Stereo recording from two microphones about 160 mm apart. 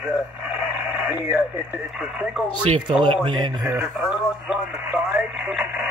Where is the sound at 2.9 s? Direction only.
35° right (ahead or behind).